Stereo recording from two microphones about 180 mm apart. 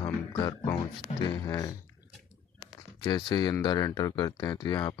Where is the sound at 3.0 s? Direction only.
25° left (ahead or behind).